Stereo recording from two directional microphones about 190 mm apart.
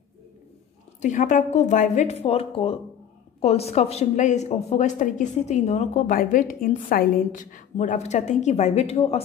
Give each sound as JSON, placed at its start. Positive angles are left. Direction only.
{"t": 1.0, "sound": "a woman's voice", "side_deg": 40}